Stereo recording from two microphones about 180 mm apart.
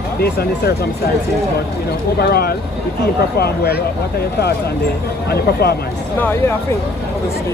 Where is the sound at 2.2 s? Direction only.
60° left (ahead or behind).